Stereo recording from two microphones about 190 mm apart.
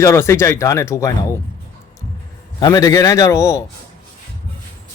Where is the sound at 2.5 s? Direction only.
20° left (ahead or behind).